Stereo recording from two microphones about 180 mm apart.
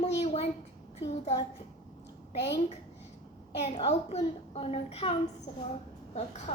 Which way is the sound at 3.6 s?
35° left (ahead or behind).